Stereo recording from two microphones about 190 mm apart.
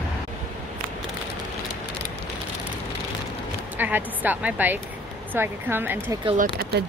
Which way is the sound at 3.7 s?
10° right (ahead or behind).